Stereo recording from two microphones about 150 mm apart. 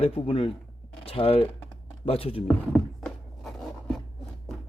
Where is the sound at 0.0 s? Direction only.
40° left (ahead or behind).